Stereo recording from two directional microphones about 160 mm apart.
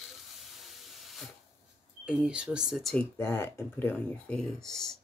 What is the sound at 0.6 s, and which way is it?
Steam, centre (ahead or behind).